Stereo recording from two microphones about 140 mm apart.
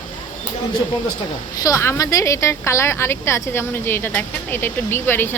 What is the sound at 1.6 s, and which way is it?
A woman's voice, 20° left (ahead or behind).